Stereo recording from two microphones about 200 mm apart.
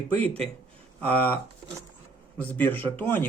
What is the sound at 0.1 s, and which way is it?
Speech, 10° left (ahead or behind).